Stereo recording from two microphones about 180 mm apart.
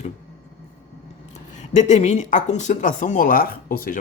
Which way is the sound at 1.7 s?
40° left (ahead or behind).